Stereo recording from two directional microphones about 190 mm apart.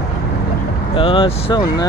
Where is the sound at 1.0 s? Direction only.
30° left (ahead or behind).